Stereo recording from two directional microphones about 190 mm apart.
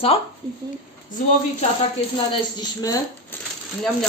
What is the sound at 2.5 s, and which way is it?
Speech, 20° left (ahead or behind).